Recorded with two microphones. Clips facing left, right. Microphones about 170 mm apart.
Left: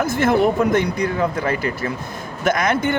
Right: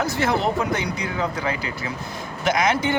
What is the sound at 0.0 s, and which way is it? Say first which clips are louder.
Speech: left 5 dB; 50° left (ahead or behind).